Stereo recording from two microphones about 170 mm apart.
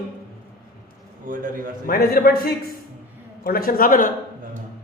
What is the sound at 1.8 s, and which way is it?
A man's voice, 60° left (ahead or behind).